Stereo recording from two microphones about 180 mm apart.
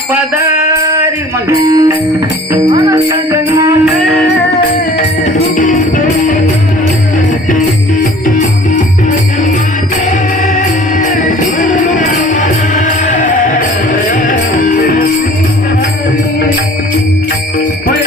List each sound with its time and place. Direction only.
0.1 s jingle bell: 10° right (ahead or behind)
1.5 s music: 20° right (ahead or behind)
3.8 s music: centre (ahead or behind)
5.5 s music: 45° left (ahead or behind)
11.6 s music: 45° left (ahead or behind)